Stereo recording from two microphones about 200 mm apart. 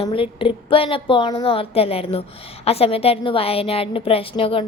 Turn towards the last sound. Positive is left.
turn(degrees=25)  # may be behind; listen again after turning